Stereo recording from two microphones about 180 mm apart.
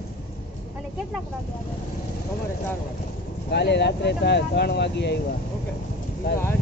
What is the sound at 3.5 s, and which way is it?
Speech, 70° left (ahead or behind).